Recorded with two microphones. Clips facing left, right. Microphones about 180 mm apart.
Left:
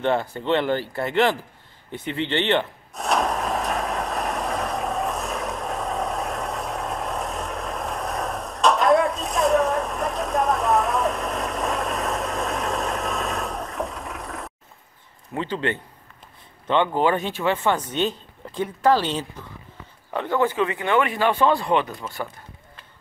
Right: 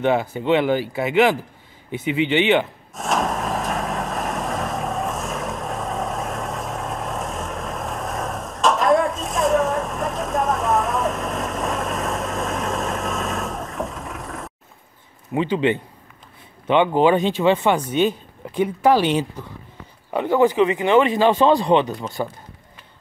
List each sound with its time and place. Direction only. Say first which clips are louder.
0.0 s speech: right 3 dB; 5° right (ahead or behind)
1.9 s wood: right 6 dB; 10° right (ahead or behind)
15.3 s speech: right 6 dB; 15° right (ahead or behind)